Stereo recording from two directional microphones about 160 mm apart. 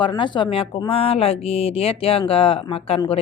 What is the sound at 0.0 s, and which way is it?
Speech, 30° left (ahead or behind).